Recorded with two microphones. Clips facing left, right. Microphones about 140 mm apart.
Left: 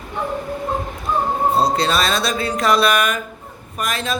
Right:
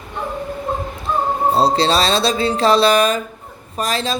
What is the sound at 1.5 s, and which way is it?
Speech, 30° right (ahead or behind).